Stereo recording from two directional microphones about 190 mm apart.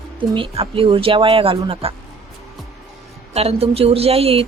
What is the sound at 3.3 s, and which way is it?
Speech, 30° right (ahead or behind).